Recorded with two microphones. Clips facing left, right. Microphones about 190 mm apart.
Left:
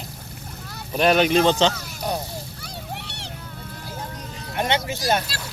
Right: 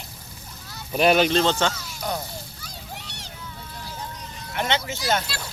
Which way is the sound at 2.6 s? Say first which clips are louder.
Left 5 dB; 65° left (ahead or behind).